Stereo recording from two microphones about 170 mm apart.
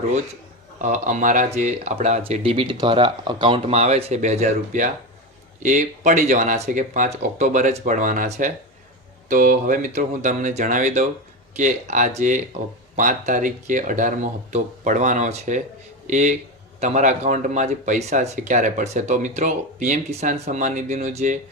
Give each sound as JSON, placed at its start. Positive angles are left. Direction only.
{"t": 0.8, "sound": "speech", "side_deg": -50}